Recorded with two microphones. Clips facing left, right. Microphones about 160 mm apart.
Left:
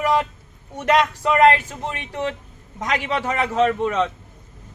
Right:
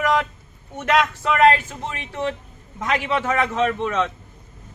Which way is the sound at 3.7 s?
15° left (ahead or behind).